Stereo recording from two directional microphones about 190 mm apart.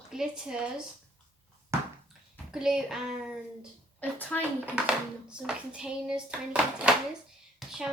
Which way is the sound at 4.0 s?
10° left (ahead or behind).